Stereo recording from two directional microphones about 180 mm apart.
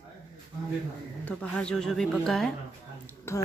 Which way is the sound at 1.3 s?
5° left (ahead or behind).